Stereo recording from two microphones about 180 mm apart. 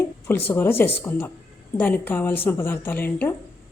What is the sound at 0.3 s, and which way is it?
Speech, 10° left (ahead or behind).